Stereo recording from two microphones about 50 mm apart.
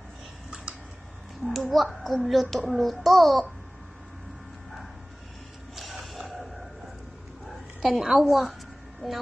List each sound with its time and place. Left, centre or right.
1.4 s a child's voice: centre
5.8 s music: centre
7.8 s a child's voice: centre